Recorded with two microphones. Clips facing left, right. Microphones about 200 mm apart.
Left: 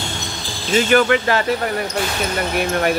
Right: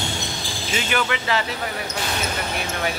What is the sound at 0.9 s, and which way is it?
Speech, 50° left (ahead or behind).